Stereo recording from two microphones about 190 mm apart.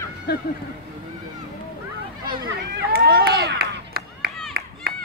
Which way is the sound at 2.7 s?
55° right (ahead or behind).